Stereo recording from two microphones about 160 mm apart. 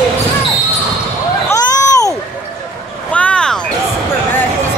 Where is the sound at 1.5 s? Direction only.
20° left (ahead or behind).